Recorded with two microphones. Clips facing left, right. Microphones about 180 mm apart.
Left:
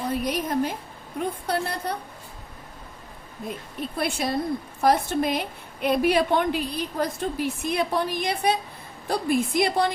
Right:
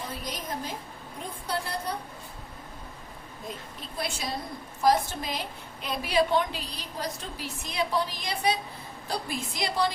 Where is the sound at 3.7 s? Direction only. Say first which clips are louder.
Left 8 dB; 60° left (ahead or behind).